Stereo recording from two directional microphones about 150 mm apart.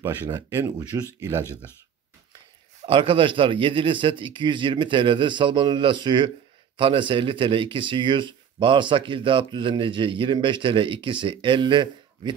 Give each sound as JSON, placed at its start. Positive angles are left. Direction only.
{"t": 0.0, "sound": "speech", "side_deg": -15}
{"t": 2.8, "sound": "speech", "side_deg": -35}